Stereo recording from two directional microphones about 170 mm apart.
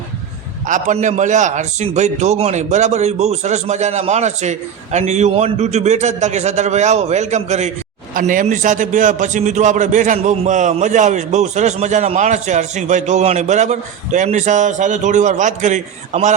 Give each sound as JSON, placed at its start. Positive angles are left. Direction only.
{"t": 0.7, "sound": "a man's voice", "side_deg": -45}